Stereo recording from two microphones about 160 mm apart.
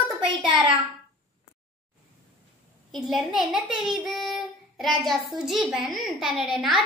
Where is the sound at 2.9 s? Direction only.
Centre (ahead or behind).